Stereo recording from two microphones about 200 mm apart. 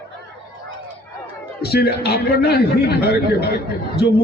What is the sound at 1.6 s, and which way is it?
A man's voice, 50° left (ahead or behind).